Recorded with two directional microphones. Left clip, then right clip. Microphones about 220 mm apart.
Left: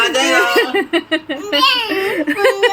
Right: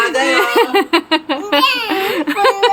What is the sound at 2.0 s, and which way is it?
Speech, 10° right (ahead or behind).